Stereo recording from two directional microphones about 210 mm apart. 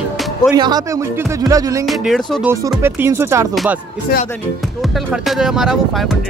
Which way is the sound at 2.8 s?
10° right (ahead or behind).